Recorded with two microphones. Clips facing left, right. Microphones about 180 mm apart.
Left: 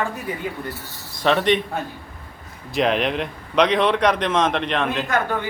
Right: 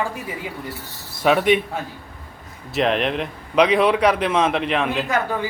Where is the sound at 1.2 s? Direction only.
5° right (ahead or behind).